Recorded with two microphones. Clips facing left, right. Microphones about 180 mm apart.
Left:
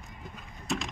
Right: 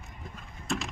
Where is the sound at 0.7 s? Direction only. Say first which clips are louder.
Even; centre (ahead or behind).